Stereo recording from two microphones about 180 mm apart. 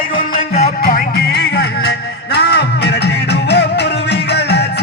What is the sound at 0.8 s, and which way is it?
Music, 55° left (ahead or behind).